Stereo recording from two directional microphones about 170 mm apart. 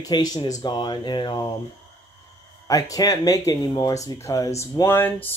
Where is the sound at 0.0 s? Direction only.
25° left (ahead or behind).